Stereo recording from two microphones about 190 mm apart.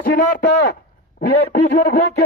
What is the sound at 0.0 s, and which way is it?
A man's voice, 45° left (ahead or behind).